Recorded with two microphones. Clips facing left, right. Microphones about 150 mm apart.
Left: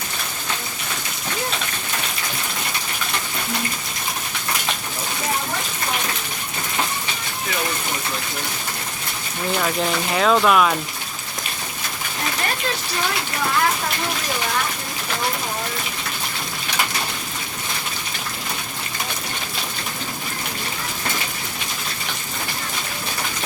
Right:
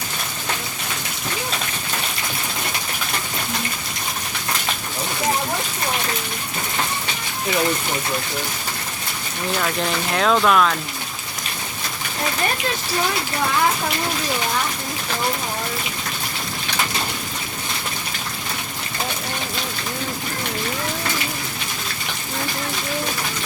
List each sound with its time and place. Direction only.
9.6 s speech: 5° left (ahead or behind)